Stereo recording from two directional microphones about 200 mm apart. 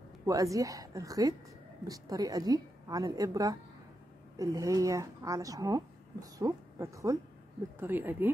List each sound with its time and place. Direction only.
0.2 s speech: 15° right (ahead or behind)